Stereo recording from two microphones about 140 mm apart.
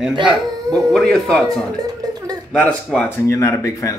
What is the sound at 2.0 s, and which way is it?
Speech, 25° right (ahead or behind).